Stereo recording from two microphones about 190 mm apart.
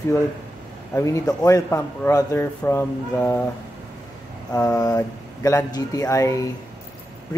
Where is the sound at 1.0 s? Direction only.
15° left (ahead or behind).